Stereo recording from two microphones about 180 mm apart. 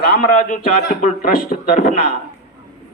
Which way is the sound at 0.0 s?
55° left (ahead or behind).